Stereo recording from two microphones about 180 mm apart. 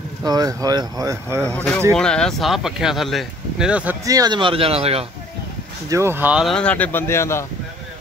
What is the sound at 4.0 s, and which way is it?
Speech, 20° right (ahead or behind).